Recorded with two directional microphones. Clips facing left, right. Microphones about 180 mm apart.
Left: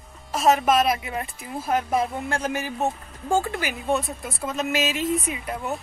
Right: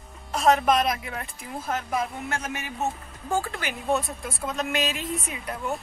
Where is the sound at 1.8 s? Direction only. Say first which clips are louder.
Left 4 dB; 30° left (ahead or behind).